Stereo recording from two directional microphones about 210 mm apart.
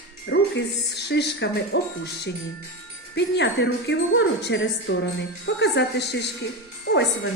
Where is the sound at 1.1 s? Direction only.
55° left (ahead or behind).